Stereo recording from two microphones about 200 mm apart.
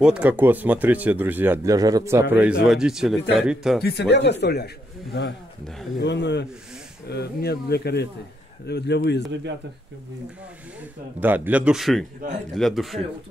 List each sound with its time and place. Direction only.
0.0 s speech: 5° right (ahead or behind)
3.8 s speech: 55° left (ahead or behind)
10.8 s speech: 10° right (ahead or behind)